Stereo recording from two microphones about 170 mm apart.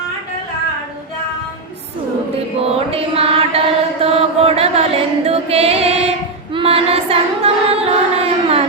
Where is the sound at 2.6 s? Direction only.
35° right (ahead or behind).